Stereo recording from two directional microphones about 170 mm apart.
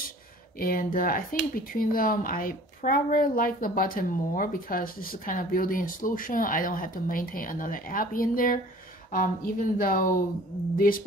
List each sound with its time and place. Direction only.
0.6 s speech: 55° left (ahead or behind)